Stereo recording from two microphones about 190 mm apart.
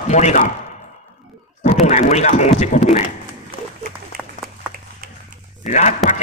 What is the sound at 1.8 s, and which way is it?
Speech, 35° left (ahead or behind).